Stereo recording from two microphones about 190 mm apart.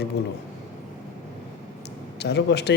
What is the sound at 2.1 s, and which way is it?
Speech, 60° left (ahead or behind).